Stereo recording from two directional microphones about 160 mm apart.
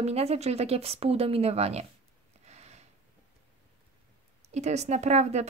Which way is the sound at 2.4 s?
45° right (ahead or behind).